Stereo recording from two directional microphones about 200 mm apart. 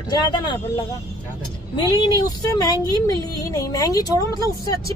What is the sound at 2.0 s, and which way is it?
Speech, 20° left (ahead or behind).